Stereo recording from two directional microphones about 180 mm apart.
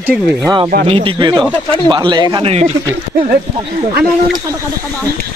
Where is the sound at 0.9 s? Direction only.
30° right (ahead or behind).